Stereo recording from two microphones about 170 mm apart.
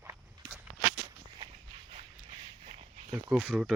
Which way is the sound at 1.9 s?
35° right (ahead or behind).